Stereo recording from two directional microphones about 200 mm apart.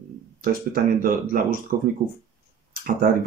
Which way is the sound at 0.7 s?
45° right (ahead or behind).